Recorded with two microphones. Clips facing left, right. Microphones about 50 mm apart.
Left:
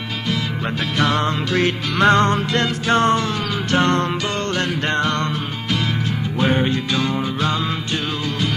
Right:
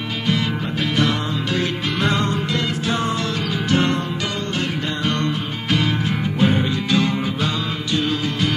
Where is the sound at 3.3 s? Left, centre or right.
Left.